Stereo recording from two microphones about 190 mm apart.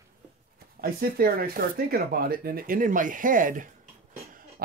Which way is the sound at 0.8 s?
50° right (ahead or behind).